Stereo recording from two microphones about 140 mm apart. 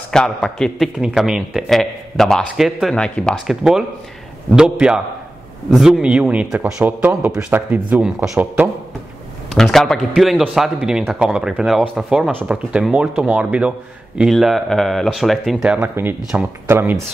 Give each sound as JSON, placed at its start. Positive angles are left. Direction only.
{"t": 0.1, "sound": "a man's voice", "side_deg": 5}
{"t": 9.5, "sound": "a man's voice", "side_deg": 0}
{"t": 16.6, "sound": "speech", "side_deg": -15}